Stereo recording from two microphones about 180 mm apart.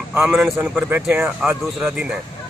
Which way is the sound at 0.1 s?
10° right (ahead or behind).